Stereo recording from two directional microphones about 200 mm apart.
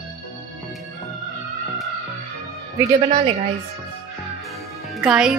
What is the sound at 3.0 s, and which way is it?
Speech, 25° right (ahead or behind).